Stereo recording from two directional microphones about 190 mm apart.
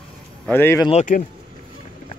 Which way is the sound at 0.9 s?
35° left (ahead or behind).